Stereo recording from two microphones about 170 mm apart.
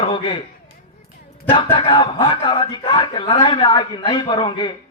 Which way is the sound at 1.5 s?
30° left (ahead or behind).